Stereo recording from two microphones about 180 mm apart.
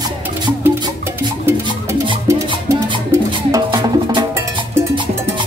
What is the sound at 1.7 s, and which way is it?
Music, 25° right (ahead or behind).